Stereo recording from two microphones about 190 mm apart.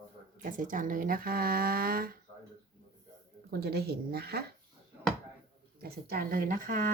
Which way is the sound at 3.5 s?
55° right (ahead or behind).